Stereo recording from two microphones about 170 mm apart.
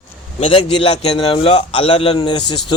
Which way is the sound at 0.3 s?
30° left (ahead or behind).